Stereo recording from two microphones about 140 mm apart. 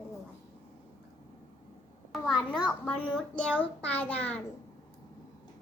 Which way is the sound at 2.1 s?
Centre (ahead or behind).